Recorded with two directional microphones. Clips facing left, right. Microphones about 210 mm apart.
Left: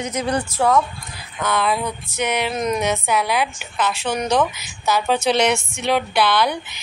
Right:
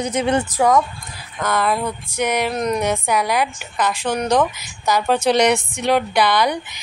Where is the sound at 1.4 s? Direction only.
10° right (ahead or behind).